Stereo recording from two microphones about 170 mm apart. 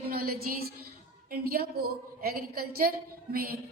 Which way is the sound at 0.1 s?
60° right (ahead or behind).